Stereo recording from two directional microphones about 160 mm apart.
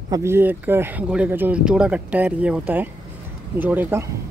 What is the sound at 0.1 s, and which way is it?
Speech, 15° right (ahead or behind).